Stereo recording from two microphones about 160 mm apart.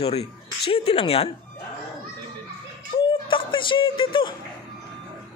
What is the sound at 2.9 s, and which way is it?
Music, 30° left (ahead or behind).